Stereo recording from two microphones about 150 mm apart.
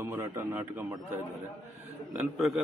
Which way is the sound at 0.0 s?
15° right (ahead or behind).